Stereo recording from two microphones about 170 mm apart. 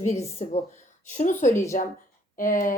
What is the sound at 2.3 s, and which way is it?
Speech, 50° left (ahead or behind).